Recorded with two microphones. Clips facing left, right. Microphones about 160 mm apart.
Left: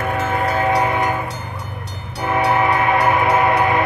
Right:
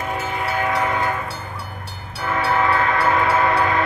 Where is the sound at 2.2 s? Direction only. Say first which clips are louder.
Left 3 dB; 20° left (ahead or behind).